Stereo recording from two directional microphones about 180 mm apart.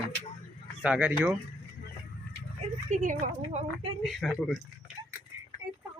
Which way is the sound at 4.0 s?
Centre (ahead or behind).